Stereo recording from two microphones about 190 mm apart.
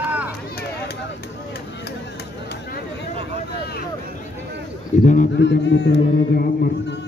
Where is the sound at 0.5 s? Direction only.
55° left (ahead or behind).